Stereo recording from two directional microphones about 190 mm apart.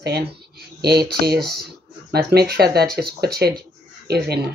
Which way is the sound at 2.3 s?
55° right (ahead or behind).